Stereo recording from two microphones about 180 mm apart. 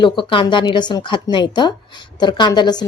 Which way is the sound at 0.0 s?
25° left (ahead or behind).